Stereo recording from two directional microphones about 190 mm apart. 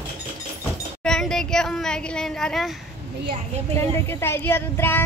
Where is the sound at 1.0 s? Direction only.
5° left (ahead or behind).